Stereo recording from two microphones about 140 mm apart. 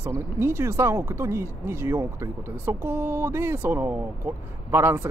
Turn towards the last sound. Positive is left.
turn(degrees=-15)  # may be behind; listen again after turning